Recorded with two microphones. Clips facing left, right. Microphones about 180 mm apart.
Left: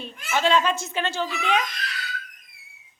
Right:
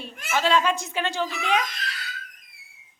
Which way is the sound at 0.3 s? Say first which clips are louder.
Left 1 dB; 5° right (ahead or behind).